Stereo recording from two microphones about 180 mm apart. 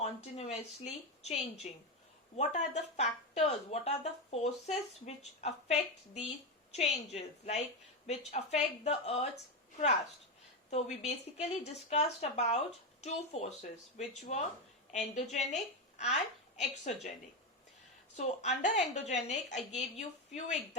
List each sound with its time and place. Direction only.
0.0 s speech: 35° left (ahead or behind)
11.0 s a woman's voice: 35° left (ahead or behind)
18.2 s speech: 40° left (ahead or behind)